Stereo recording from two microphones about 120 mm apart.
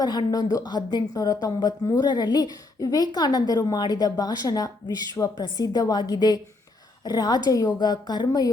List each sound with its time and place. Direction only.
0.0 s a woman's voice: 35° left (ahead or behind)